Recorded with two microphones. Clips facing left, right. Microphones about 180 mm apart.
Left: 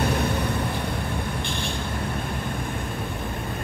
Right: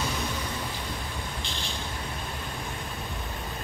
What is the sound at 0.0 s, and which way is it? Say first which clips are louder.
Vehicle: left 8 dB; 60° left (ahead or behind).